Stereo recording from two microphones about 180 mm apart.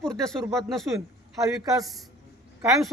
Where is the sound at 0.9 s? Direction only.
20° right (ahead or behind).